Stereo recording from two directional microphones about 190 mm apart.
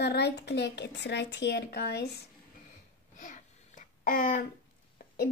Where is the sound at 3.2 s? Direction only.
40° left (ahead or behind).